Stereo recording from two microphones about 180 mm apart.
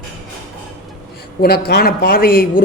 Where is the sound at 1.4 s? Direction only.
60° left (ahead or behind).